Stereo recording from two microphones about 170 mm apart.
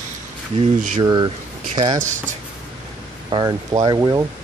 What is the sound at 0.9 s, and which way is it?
Speech, 30° right (ahead or behind).